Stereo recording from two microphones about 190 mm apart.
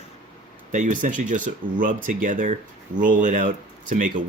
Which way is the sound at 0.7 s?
40° right (ahead or behind).